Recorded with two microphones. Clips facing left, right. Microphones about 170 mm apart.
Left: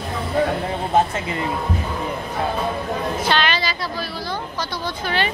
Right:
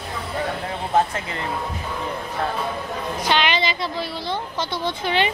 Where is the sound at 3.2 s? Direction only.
15° right (ahead or behind).